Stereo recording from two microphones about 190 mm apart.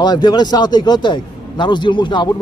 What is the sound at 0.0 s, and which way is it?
Speech, 20° left (ahead or behind).